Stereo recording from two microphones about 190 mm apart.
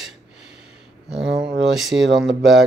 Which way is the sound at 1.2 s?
35° right (ahead or behind).